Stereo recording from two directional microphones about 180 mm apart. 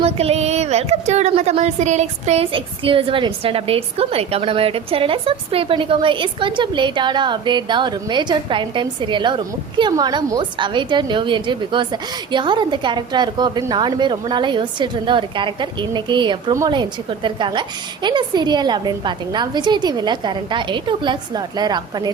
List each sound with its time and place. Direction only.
0.0 s speech: 35° right (ahead or behind)